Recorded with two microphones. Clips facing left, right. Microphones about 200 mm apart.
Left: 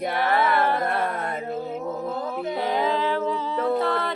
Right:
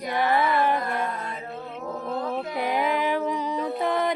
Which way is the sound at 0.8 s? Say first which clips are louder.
Left 4 dB; 60° left (ahead or behind).